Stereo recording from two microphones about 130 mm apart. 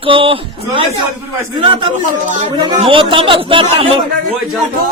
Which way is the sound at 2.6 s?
40° right (ahead or behind).